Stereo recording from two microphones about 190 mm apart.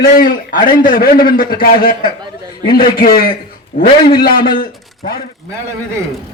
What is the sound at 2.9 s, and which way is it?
A man's voice, 50° left (ahead or behind).